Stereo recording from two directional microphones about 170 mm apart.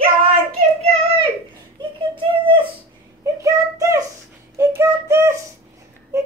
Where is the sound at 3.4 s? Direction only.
20° right (ahead or behind).